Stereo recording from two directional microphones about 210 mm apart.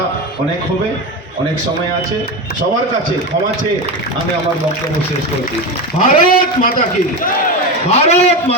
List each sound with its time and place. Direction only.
6.0 s a man's voice: 40° left (ahead or behind)
7.9 s a man's voice: 30° left (ahead or behind)